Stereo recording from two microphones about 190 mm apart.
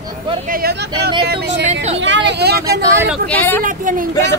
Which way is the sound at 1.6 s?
35° right (ahead or behind).